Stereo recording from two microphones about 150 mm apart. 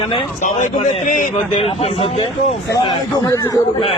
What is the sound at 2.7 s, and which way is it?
Speech, 25° left (ahead or behind).